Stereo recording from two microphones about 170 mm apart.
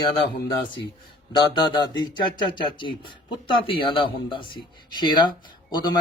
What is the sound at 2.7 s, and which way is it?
A man's voice, 30° left (ahead or behind).